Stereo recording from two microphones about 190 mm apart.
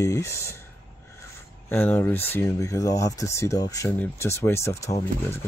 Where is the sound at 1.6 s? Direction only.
10° left (ahead or behind).